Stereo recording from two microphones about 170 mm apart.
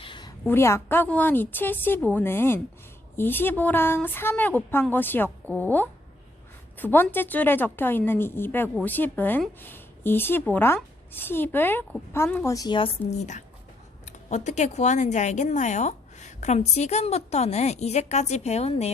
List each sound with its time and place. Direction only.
0.0 s a sound: 25° left (ahead or behind)
0.4 s a woman's voice: 15° left (ahead or behind)
13.1 s speech: 45° left (ahead or behind)